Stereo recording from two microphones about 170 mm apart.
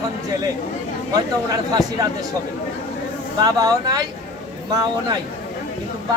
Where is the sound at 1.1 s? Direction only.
20° right (ahead or behind).